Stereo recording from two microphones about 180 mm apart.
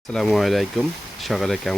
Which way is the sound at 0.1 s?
Centre (ahead or behind).